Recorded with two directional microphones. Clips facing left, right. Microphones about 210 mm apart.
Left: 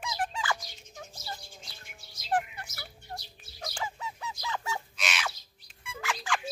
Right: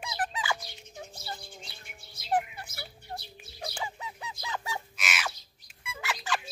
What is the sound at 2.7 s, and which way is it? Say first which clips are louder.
Fowl: right 3 dB; 60° right (ahead or behind).